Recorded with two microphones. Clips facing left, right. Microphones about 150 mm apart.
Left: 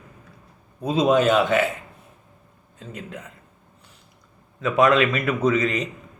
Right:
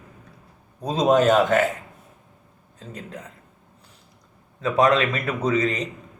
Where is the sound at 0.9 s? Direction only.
40° right (ahead or behind).